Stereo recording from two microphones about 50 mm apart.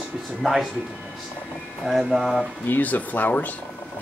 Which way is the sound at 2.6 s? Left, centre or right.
Left.